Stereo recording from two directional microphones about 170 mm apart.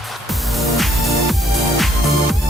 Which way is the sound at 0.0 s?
Centre (ahead or behind).